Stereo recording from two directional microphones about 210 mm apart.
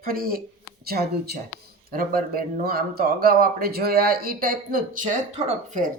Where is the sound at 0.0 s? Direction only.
45° right (ahead or behind).